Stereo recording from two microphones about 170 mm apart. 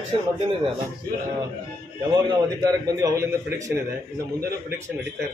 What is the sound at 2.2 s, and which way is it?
A man's voice, 20° right (ahead or behind).